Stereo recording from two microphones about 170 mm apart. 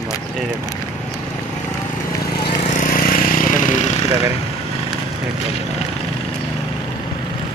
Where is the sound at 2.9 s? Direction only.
55° left (ahead or behind).